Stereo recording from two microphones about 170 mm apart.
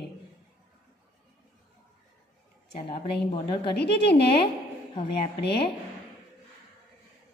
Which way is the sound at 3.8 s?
75° left (ahead or behind).